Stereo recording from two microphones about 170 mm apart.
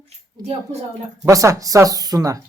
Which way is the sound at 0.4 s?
40° right (ahead or behind).